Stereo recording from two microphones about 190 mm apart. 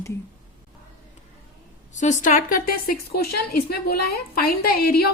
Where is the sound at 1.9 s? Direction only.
40° left (ahead or behind).